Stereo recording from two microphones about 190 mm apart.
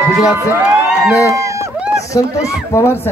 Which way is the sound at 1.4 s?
15° right (ahead or behind).